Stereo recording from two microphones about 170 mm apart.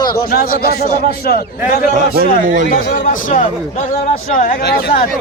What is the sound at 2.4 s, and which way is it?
Speech, 50° right (ahead or behind).